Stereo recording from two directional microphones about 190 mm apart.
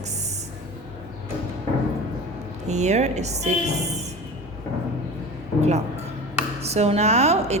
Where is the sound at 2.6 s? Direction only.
35° right (ahead or behind).